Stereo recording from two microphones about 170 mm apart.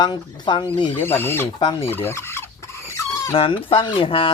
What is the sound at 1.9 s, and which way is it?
Fowl, 15° left (ahead or behind).